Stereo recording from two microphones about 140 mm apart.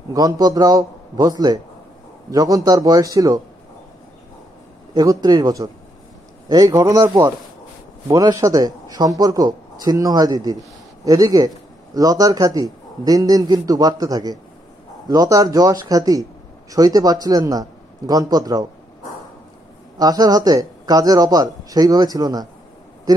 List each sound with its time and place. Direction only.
0.1 s a man's voice: 25° right (ahead or behind)
4.9 s a man's voice: 25° right (ahead or behind)
20.0 s a man's voice: 25° right (ahead or behind)
23.1 s a sound: 25° right (ahead or behind)